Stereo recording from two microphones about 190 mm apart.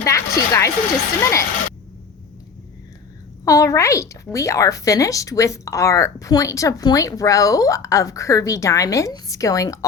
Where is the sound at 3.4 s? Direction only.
15° left (ahead or behind).